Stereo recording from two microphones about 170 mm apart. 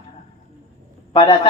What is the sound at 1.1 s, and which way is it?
Speech, 30° left (ahead or behind).